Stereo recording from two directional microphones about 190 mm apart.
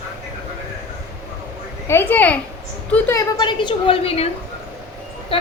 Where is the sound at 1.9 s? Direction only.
10° left (ahead or behind); by 4.3 s 30° left (ahead or behind).